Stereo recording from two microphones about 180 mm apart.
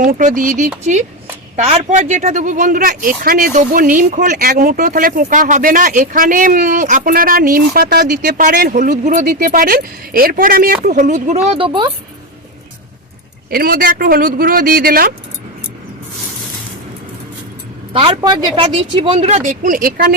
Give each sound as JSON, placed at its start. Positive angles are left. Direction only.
{"t": 0.0, "sound": "speech", "side_deg": -45}
{"t": 1.5, "sound": "speech", "side_deg": -35}
{"t": 13.5, "sound": "speech", "side_deg": -55}
{"t": 18.2, "sound": "speech", "side_deg": -25}
{"t": 19.5, "sound": "speech", "side_deg": -45}